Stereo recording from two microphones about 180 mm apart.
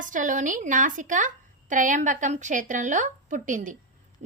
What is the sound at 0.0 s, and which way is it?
A woman's voice, 45° right (ahead or behind).